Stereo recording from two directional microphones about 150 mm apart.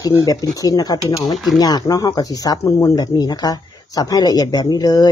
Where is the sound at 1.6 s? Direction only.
25° left (ahead or behind).